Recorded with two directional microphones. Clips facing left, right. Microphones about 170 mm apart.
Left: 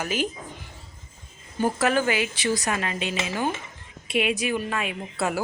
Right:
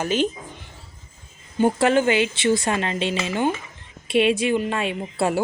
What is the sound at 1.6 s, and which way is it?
A woman's voice, 25° right (ahead or behind).